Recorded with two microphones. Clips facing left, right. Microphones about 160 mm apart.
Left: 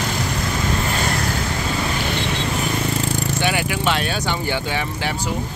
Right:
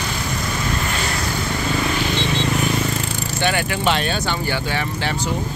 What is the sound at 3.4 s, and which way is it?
Vehicle, 10° left (ahead or behind).